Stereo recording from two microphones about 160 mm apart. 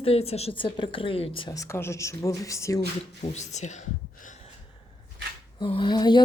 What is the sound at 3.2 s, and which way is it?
Speech, 45° left (ahead or behind).